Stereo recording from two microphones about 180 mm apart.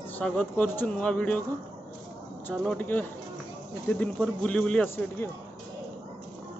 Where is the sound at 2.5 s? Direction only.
10° left (ahead or behind).